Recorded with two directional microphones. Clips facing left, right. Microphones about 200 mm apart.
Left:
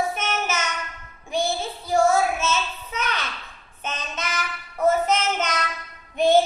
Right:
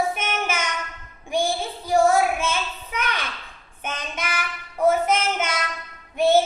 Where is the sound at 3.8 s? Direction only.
10° right (ahead or behind).